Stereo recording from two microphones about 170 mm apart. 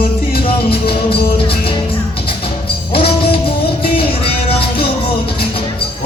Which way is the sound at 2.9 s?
35° left (ahead or behind).